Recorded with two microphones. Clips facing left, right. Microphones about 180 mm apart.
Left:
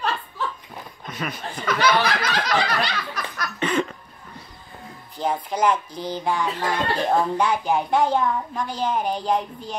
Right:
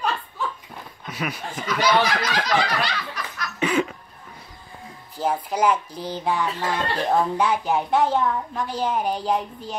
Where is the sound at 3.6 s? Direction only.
5° right (ahead or behind).